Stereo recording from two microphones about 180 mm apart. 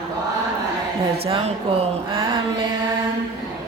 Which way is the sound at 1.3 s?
35° right (ahead or behind).